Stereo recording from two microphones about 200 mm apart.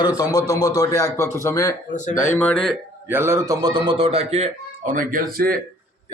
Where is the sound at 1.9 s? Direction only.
40° left (ahead or behind).